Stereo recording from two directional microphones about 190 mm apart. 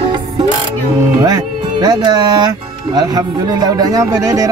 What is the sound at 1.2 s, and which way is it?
Speech, 20° right (ahead or behind).